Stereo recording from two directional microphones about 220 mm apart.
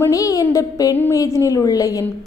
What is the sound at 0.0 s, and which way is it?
A woman's voice, 15° left (ahead or behind).